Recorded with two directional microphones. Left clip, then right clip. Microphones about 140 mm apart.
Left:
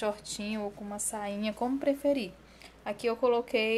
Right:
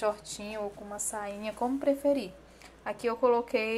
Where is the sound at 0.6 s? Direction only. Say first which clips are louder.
Right 1 dB; 15° left (ahead or behind).